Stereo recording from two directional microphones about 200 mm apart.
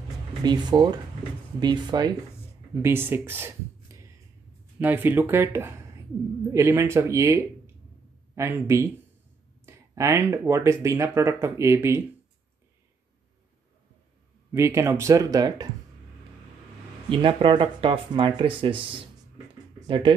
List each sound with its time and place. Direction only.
0.4 s speech: 20° right (ahead or behind)
14.5 s speech: 15° right (ahead or behind)
17.1 s speech: 25° right (ahead or behind)
19.9 s speech: 25° right (ahead or behind)